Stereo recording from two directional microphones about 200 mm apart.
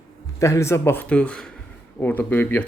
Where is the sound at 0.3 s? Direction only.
15° left (ahead or behind).